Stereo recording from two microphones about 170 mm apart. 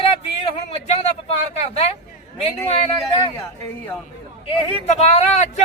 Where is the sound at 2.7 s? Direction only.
35° left (ahead or behind).